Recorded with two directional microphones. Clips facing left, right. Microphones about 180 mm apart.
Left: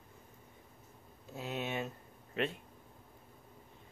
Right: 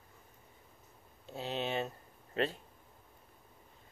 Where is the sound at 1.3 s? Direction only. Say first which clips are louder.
Right 2 dB; 30° right (ahead or behind).